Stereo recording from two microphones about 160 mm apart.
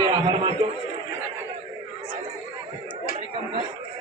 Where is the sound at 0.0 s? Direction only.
25° right (ahead or behind).